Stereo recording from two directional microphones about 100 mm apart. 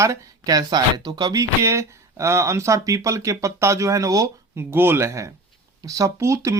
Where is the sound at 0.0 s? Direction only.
35° right (ahead or behind).